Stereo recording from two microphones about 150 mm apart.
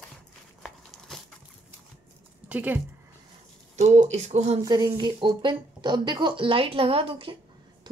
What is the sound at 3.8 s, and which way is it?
Speech, 50° right (ahead or behind).